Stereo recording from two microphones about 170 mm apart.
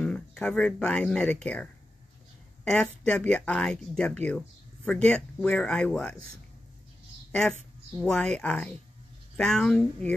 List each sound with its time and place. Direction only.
0.0 s speech: 5° left (ahead or behind)
8.0 s speech: 5° left (ahead or behind)